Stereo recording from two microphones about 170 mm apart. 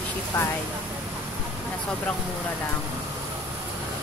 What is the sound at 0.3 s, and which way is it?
Speech, 15° left (ahead or behind).